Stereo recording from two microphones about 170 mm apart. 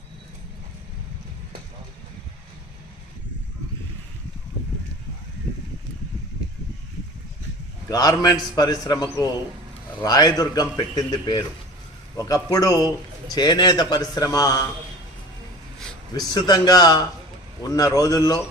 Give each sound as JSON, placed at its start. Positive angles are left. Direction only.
{"t": 7.9, "sound": "a man's voice", "side_deg": 20}
{"t": 16.1, "sound": "a man's voice", "side_deg": 25}